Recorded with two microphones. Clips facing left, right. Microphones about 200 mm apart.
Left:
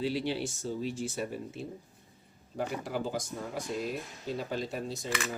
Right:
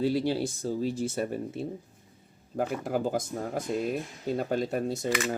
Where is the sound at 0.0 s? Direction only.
40° right (ahead or behind).